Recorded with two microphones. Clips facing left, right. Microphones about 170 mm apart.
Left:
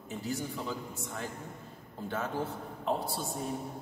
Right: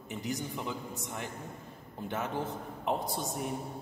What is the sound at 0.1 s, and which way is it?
A man's voice, 15° right (ahead or behind).